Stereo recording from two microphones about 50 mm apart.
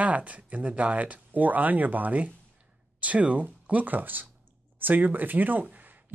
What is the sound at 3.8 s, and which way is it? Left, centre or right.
Speech, right.